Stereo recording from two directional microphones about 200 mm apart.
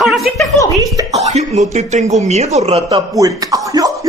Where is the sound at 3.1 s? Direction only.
15° right (ahead or behind).